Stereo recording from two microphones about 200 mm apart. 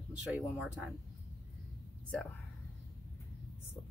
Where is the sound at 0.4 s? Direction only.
5° right (ahead or behind).